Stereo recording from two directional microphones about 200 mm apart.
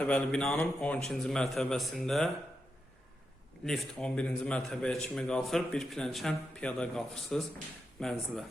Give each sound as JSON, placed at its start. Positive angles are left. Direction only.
{"t": 0.0, "sound": "a man's voice", "side_deg": 5}
{"t": 3.7, "sound": "a man's voice", "side_deg": 0}